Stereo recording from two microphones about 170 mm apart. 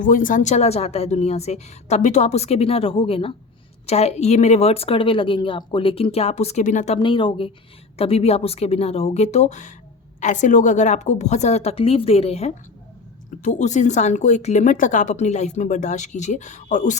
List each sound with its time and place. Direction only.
0.0 s a woman's voice: 50° left (ahead or behind)
7.0 s a woman's voice: 30° left (ahead or behind); by 17.0 s 45° left (ahead or behind)